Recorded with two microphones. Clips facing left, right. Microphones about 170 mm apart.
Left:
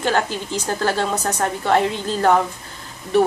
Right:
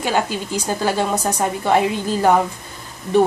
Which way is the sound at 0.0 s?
10° right (ahead or behind).